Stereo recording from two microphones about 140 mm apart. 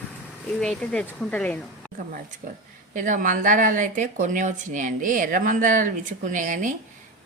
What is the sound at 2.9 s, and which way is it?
A woman's voice, 70° right (ahead or behind).